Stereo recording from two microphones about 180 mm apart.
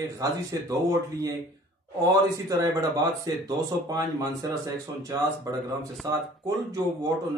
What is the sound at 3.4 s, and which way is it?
Speech, 20° right (ahead or behind).